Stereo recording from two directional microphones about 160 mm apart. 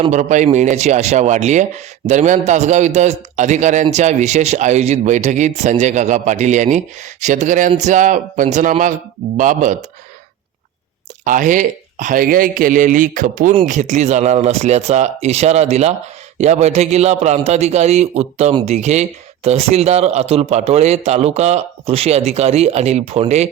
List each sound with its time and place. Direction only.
0.0 s speech: 50° right (ahead or behind)
11.3 s a man's voice: 55° right (ahead or behind)